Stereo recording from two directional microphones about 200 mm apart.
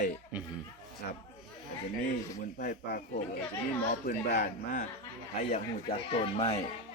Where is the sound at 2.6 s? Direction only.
45° left (ahead or behind).